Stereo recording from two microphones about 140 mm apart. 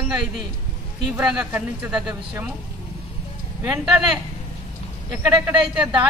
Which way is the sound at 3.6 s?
10° right (ahead or behind).